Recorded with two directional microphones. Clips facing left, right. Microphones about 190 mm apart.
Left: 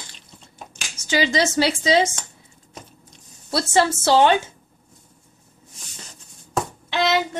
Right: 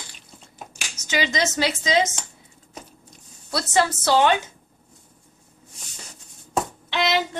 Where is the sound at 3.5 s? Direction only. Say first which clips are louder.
Left 2 dB; 30° left (ahead or behind).